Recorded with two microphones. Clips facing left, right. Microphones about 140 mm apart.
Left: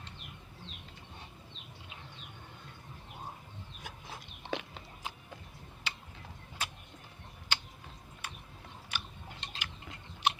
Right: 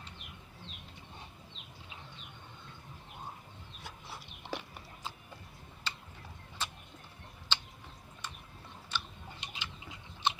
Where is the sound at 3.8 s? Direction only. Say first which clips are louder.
Even; 15° left (ahead or behind).